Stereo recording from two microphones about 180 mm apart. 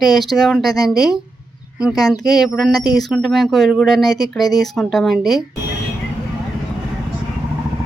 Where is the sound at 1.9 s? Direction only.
20° left (ahead or behind).